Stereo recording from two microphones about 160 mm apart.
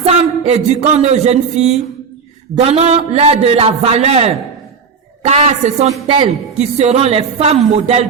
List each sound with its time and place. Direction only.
0.0 s a woman's voice: 40° right (ahead or behind)